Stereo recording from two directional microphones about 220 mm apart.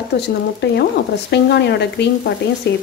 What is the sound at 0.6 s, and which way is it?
Speech, 50° left (ahead or behind).